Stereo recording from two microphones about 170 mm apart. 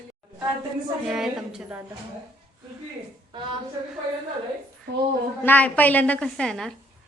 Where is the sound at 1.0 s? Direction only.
5° right (ahead or behind).